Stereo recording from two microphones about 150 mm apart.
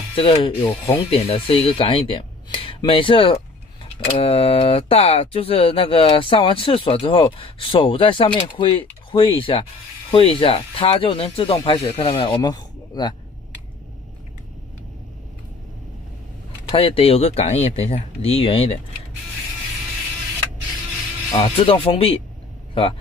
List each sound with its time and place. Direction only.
0.1 s speech: 40° left (ahead or behind)
0.6 s speech: 15° left (ahead or behind)
1.1 s speech: 40° left (ahead or behind)
16.7 s speech: 40° left (ahead or behind)
21.3 s speech: 35° left (ahead or behind)